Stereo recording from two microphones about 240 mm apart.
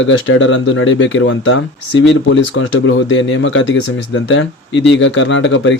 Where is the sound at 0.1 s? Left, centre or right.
Left.